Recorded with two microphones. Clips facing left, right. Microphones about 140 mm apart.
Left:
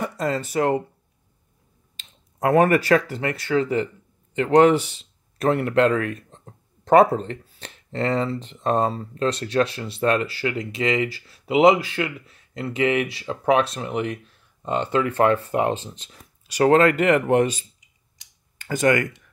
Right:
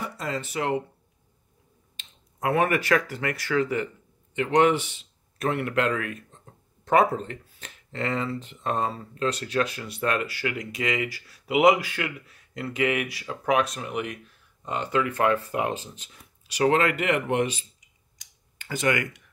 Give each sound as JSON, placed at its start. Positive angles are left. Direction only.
{"t": 0.2, "sound": "speech", "side_deg": 40}
{"t": 2.0, "sound": "speech", "side_deg": 40}
{"t": 18.6, "sound": "speech", "side_deg": 45}